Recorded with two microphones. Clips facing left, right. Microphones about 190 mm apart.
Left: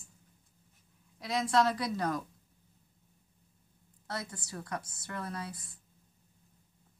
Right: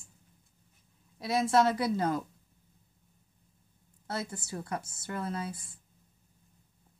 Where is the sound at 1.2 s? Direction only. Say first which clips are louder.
Right 3 dB; 25° right (ahead or behind).